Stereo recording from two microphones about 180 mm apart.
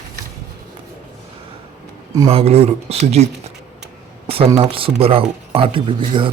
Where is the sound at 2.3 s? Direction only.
35° right (ahead or behind).